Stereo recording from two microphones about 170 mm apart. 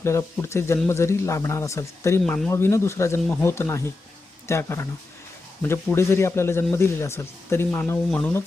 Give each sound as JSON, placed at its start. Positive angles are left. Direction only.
{"t": 0.0, "sound": "speech", "side_deg": 15}
{"t": 2.2, "sound": "speech", "side_deg": 5}
{"t": 2.5, "sound": "speech", "side_deg": 15}